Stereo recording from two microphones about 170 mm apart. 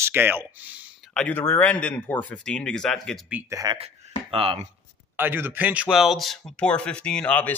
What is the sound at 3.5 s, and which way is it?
Speech, 20° right (ahead or behind).